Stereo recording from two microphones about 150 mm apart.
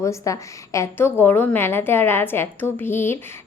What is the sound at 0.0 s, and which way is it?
A woman's voice, 20° left (ahead or behind).